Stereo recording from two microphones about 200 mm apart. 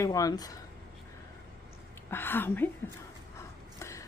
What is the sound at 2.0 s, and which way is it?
Speech, 10° left (ahead or behind).